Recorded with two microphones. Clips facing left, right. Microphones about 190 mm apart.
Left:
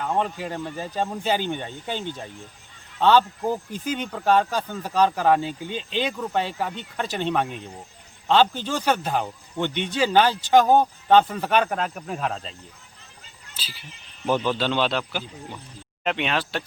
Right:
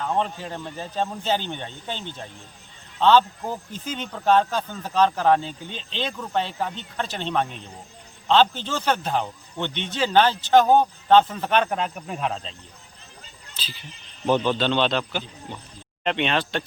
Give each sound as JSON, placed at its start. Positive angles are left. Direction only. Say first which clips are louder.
{"t": 0.0, "sound": "speech", "louder": "even", "side_deg": 10}